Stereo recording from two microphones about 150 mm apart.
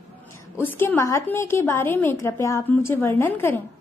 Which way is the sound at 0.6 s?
15° left (ahead or behind).